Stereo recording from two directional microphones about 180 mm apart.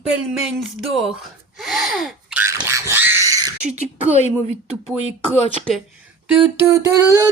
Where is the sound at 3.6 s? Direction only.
35° right (ahead or behind).